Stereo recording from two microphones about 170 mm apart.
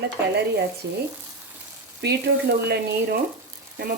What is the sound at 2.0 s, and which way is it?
Speech, 75° right (ahead or behind).